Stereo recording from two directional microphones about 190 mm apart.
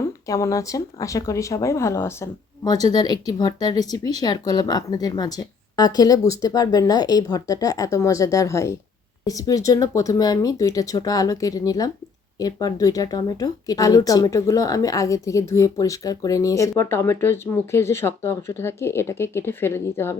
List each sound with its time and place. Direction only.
0.3 s speech: 15° left (ahead or behind)